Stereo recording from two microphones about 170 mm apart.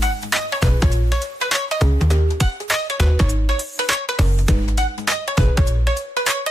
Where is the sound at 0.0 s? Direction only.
Centre (ahead or behind).